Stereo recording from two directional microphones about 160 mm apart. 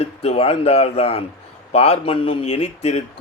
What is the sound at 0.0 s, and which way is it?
Speech, 40° left (ahead or behind).